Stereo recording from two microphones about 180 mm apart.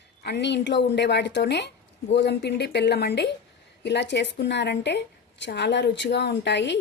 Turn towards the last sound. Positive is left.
turn(degrees=75)  # may be behind; listen again after turning